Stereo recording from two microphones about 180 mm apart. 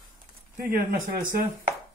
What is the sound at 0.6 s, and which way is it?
Speech, 50° right (ahead or behind).